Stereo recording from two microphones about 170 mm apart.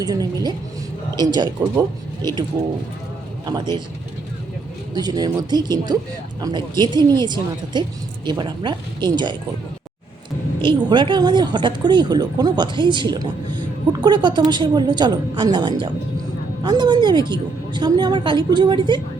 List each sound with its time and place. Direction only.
0.0 s speech: 20° right (ahead or behind)
3.4 s speech: 25° right (ahead or behind)
4.9 s speech: 25° right (ahead or behind)
10.8 s speech: 25° right (ahead or behind)